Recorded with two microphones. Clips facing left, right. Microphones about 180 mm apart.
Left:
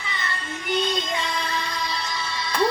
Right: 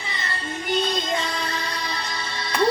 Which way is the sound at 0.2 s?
35° right (ahead or behind).